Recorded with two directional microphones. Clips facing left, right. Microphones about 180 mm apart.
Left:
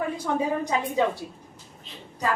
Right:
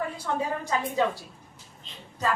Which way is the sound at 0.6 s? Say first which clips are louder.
Left 2 dB; 15° left (ahead or behind).